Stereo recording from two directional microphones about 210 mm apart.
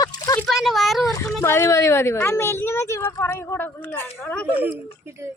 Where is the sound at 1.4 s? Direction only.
15° left (ahead or behind).